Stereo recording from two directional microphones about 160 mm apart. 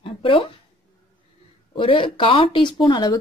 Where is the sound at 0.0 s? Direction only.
35° left (ahead or behind).